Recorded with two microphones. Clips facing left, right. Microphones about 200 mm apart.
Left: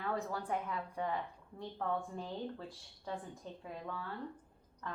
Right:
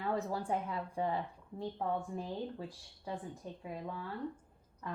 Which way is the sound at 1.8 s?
15° right (ahead or behind).